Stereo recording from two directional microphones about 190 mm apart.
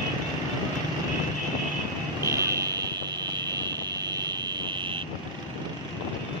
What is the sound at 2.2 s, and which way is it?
Vehicle, 15° right (ahead or behind).